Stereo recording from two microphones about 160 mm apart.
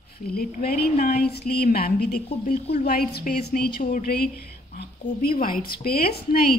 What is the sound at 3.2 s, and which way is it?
A woman's voice, 60° left (ahead or behind).